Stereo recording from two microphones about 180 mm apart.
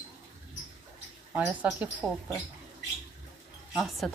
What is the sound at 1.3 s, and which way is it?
Speech, 10° right (ahead or behind).